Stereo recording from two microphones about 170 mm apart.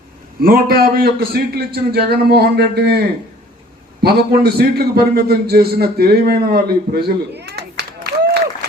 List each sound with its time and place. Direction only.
0.4 s a man's voice: 60° right (ahead or behind)
4.0 s a man's voice: 65° right (ahead or behind)